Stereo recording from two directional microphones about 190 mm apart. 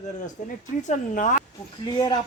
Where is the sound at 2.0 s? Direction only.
20° left (ahead or behind).